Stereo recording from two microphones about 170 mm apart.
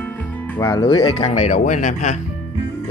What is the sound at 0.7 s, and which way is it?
Speech, 25° left (ahead or behind).